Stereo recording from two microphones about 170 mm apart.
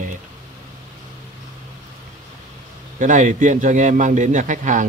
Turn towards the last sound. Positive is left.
turn(degrees=-50)  # may be behind; listen again after turning